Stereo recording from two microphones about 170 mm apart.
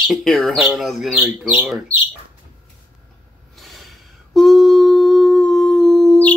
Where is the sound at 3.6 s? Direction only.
Centre (ahead or behind).